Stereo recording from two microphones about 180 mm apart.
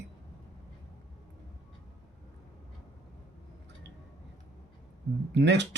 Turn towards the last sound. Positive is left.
turn(degrees=-75)  # may be behind; listen again after turning